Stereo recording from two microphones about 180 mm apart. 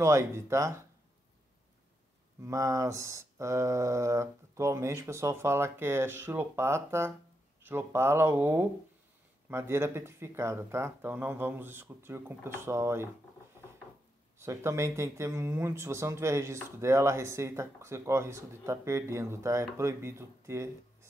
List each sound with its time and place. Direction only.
0.0 s speech: 15° right (ahead or behind)
2.4 s speech: 15° right (ahead or behind)
14.4 s speech: 15° right (ahead or behind)